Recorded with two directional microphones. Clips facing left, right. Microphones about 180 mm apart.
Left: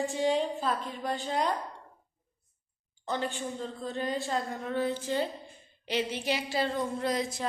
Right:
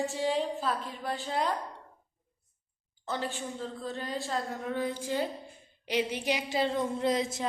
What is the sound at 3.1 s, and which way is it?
A woman's voice, 5° right (ahead or behind).